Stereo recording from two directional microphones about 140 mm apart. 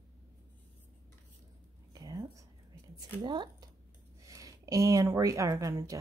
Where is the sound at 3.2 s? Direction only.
30° right (ahead or behind).